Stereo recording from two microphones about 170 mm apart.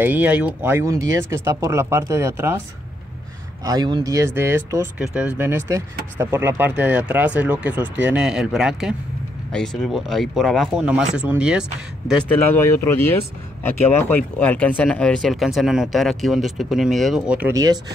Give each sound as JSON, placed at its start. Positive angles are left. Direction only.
{"t": 0.0, "sound": "speech", "side_deg": -10}
{"t": 3.6, "sound": "speech", "side_deg": -25}
{"t": 12.5, "sound": "speech", "side_deg": 15}